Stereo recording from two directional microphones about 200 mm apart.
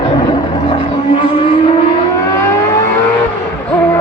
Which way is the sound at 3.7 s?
10° left (ahead or behind).